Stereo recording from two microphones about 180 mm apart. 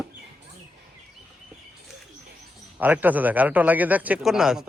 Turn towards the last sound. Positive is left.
turn(degrees=0)  # may be behind; listen again after turning